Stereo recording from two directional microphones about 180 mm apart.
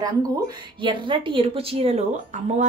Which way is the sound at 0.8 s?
25° right (ahead or behind).